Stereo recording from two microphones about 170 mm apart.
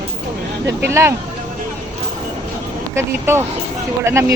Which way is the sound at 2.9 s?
15° right (ahead or behind).